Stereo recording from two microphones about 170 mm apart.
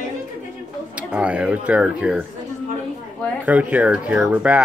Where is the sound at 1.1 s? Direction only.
5° right (ahead or behind).